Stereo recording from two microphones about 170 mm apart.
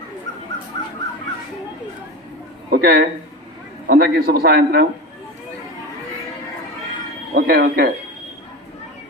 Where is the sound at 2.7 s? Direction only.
60° right (ahead or behind).